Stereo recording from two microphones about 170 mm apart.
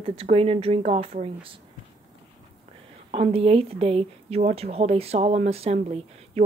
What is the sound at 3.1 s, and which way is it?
Speech, 35° right (ahead or behind).